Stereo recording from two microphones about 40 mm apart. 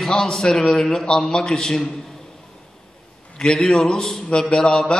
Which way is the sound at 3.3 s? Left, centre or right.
Centre.